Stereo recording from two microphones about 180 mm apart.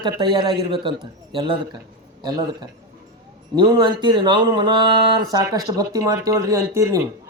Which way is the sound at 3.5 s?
25° right (ahead or behind).